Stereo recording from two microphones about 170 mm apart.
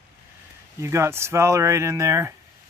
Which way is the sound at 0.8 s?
15° right (ahead or behind).